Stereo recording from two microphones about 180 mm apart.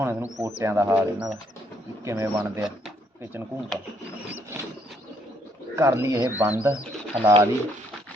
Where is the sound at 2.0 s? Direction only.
20° right (ahead or behind).